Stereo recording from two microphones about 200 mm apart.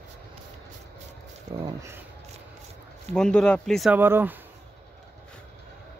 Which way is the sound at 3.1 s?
5° left (ahead or behind).